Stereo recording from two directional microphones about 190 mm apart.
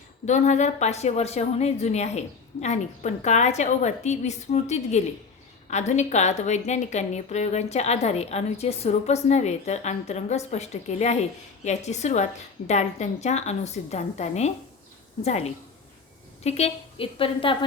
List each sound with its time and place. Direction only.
0.3 s a woman's voice: 40° left (ahead or behind)